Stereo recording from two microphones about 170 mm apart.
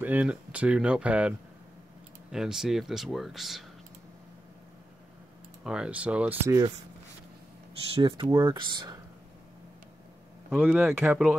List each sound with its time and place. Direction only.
0.0 s speech: 10° right (ahead or behind)
2.3 s speech: 5° right (ahead or behind)
5.6 s speech: 5° right (ahead or behind)
7.9 s speech: 30° right (ahead or behind)
10.5 s speech: 10° right (ahead or behind)